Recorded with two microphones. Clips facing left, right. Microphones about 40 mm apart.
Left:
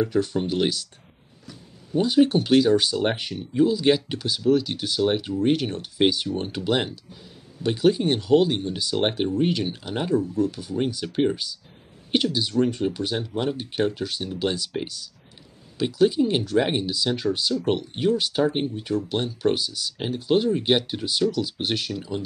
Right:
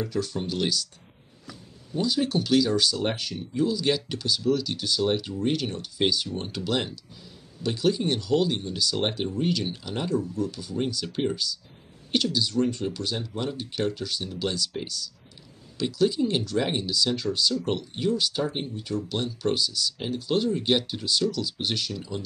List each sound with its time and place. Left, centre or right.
0.0 s speech: left
2.0 s speech: left